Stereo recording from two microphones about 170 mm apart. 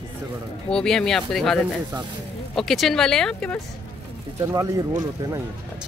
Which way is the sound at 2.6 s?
Centre (ahead or behind).